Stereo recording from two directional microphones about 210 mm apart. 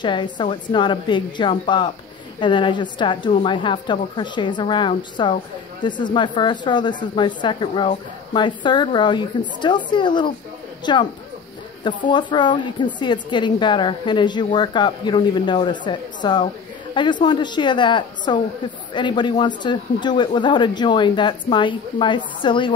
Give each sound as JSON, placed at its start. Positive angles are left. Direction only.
{"t": 0.0, "sound": "a woman's voice", "side_deg": 20}
{"t": 12.1, "sound": "a woman's voice", "side_deg": 20}